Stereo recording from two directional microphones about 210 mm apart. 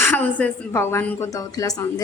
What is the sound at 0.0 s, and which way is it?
A woman's voice, 10° left (ahead or behind).